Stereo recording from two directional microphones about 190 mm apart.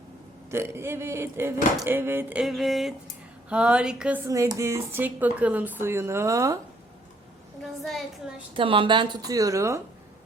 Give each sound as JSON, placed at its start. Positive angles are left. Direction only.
{"t": 0.5, "sound": "speech", "side_deg": -15}
{"t": 7.6, "sound": "speech", "side_deg": 0}
{"t": 8.5, "sound": "speech", "side_deg": -25}